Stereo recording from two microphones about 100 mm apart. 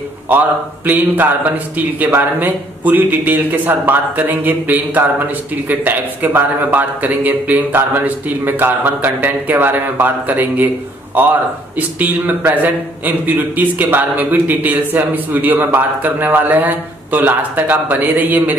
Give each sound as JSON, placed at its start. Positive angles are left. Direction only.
{"t": 0.3, "sound": "a man's voice", "side_deg": -20}